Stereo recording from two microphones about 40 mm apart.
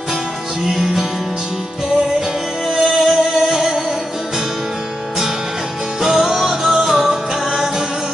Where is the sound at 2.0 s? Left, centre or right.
Centre.